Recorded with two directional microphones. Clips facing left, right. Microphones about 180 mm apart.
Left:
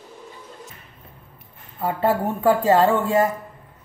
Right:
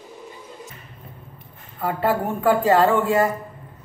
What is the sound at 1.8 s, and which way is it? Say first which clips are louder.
A woman's voice: left 1 dB; 25° left (ahead or behind).